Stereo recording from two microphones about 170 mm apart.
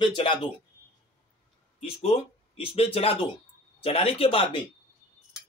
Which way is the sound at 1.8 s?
35° left (ahead or behind).